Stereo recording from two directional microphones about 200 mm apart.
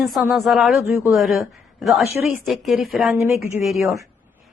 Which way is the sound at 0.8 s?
10° right (ahead or behind).